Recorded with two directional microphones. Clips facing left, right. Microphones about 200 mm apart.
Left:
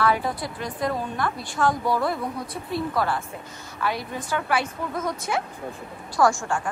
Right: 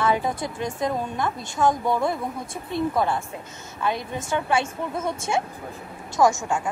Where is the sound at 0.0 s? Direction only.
20° right (ahead or behind).